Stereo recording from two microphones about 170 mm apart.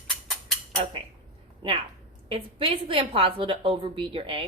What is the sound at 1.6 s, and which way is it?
A woman's voice, 30° right (ahead or behind).